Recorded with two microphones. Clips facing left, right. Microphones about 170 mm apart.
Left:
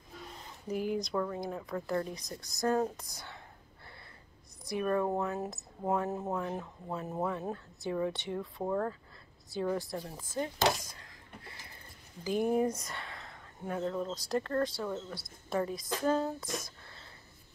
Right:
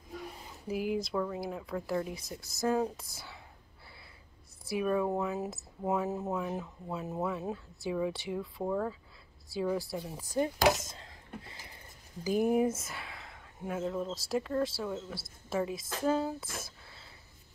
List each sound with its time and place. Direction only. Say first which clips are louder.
0.4 s speech: left 1 dB; 5° right (ahead or behind)
4.6 s speech: right 1 dB; 5° right (ahead or behind)
10.3 s speech: right 3 dB; 15° right (ahead or behind)
12.2 s speech: right 2 dB; 10° right (ahead or behind)
16.5 s a sound: left 4 dB; 5° right (ahead or behind)